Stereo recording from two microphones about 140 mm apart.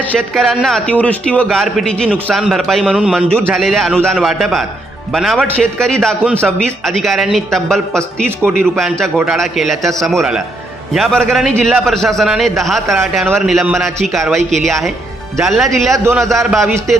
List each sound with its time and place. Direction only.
0.0 s a man's voice: 5° left (ahead or behind)
2.0 s a man's voice: 15° right (ahead or behind)
2.3 s a man's voice: centre (ahead or behind)
16.6 s a man's voice: 20° right (ahead or behind)